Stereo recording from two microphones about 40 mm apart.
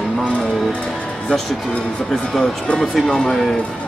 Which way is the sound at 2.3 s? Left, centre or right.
Centre.